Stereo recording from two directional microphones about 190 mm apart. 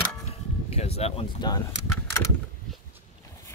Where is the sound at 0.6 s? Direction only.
35° left (ahead or behind).